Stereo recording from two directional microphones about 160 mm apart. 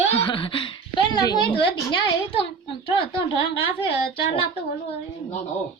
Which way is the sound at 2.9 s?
35° left (ahead or behind).